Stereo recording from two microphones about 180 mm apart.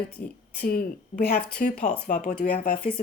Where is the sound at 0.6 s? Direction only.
55° left (ahead or behind).